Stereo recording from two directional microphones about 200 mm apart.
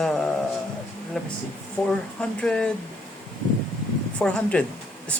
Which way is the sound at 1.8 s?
5° left (ahead or behind).